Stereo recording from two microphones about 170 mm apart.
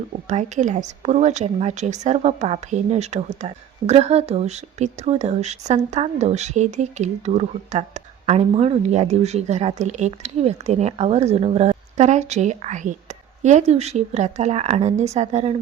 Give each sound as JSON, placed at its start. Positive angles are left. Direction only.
{"t": 0.3, "sound": "a woman's voice", "side_deg": -45}